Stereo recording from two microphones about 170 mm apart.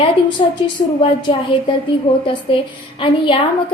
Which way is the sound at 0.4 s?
35° left (ahead or behind).